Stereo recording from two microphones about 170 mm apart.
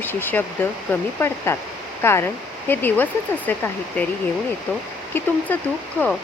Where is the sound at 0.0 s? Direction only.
10° left (ahead or behind).